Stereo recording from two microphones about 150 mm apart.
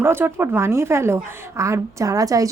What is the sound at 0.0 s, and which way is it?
A woman's voice, 15° right (ahead or behind).